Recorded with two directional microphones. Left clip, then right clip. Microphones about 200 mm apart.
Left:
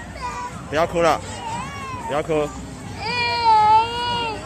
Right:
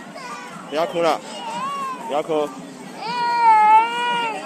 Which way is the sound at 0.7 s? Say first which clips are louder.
Left 1 dB; 5° left (ahead or behind).